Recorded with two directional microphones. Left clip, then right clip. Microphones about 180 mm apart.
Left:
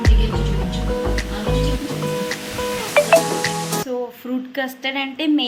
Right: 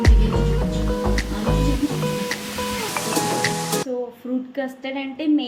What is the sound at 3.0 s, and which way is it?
Music, 60° left (ahead or behind).